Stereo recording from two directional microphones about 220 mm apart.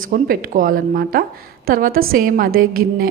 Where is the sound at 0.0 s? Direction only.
40° right (ahead or behind).